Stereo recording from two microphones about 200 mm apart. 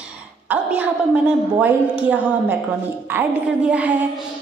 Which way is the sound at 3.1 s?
10° right (ahead or behind).